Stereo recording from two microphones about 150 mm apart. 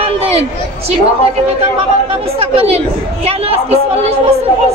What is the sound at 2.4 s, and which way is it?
Speech, 40° right (ahead or behind).